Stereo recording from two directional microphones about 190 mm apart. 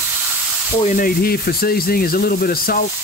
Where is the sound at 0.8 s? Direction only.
45° left (ahead or behind).